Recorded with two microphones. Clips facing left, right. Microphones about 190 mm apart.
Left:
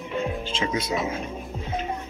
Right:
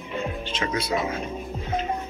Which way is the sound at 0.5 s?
20° left (ahead or behind).